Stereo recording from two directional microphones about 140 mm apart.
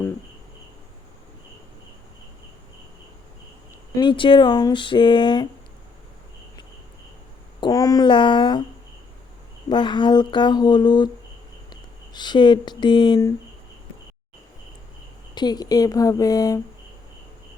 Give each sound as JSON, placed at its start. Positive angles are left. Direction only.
{"t": 3.9, "sound": "speech", "side_deg": 35}
{"t": 7.6, "sound": "speech", "side_deg": 25}
{"t": 9.6, "sound": "speech", "side_deg": 35}
{"t": 15.4, "sound": "speech", "side_deg": 30}